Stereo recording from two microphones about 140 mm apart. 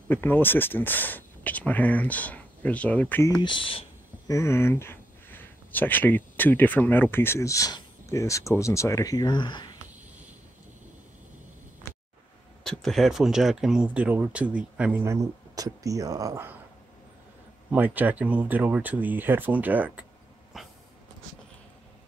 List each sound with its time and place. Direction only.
0.1 s speech: 15° left (ahead or behind)
3.3 s speech: 35° left (ahead or behind)
4.3 s speech: 20° left (ahead or behind)
12.6 s speech: 5° left (ahead or behind); by 15.1 s 10° right (ahead or behind)
15.5 s speech: 25° right (ahead or behind)
17.6 s speech: 10° right (ahead or behind)
20.5 s a sound: centre (ahead or behind)